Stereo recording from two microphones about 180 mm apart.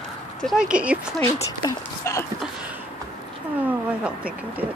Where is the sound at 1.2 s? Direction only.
20° left (ahead or behind).